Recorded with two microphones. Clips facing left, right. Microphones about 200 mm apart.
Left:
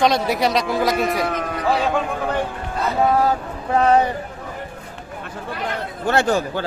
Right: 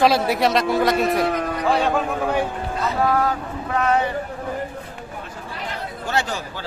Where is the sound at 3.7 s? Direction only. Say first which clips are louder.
Left 5 dB; 35° left (ahead or behind).